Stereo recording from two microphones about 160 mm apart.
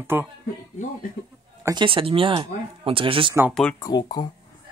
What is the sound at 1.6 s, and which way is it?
Speech, 30° right (ahead or behind).